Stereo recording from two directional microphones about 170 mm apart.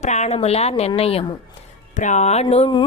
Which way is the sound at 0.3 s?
40° left (ahead or behind).